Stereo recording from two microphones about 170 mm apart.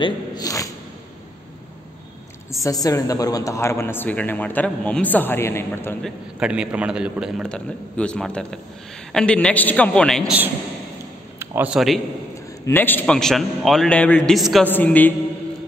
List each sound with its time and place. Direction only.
0.0 s a sound: 25° left (ahead or behind)
2.6 s a man's voice: 20° left (ahead or behind)
6.0 s a man's voice: 5° right (ahead or behind)
11.3 s a man's voice: 10° right (ahead or behind)
12.6 s a man's voice: 10° left (ahead or behind)